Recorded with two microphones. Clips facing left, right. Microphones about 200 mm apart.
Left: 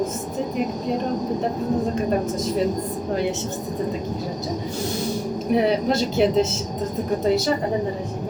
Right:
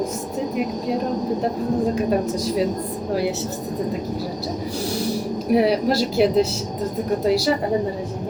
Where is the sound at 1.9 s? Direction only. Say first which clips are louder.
Right 2 dB; centre (ahead or behind).